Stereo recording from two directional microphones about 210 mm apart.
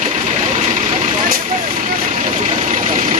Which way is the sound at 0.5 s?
35° right (ahead or behind).